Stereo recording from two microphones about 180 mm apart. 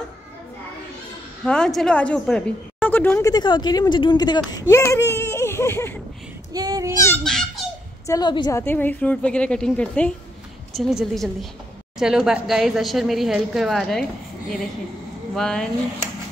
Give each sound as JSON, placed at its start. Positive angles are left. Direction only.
{"t": 1.4, "sound": "a woman's voice", "side_deg": 5}
{"t": 6.5, "sound": "speech", "side_deg": -20}
{"t": 6.9, "sound": "a woman's voice", "side_deg": 15}
{"t": 7.2, "sound": "a sound", "side_deg": 5}
{"t": 8.1, "sound": "a woman's voice", "side_deg": 25}
{"t": 15.3, "sound": "speech", "side_deg": 5}